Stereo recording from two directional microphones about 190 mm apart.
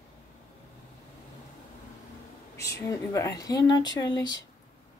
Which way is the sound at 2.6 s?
15° left (ahead or behind).